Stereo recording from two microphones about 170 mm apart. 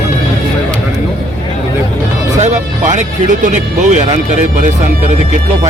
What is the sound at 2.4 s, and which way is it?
Speech, 45° right (ahead or behind).